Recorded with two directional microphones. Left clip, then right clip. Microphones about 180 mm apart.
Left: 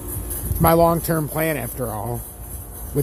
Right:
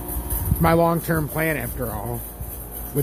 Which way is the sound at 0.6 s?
15° left (ahead or behind).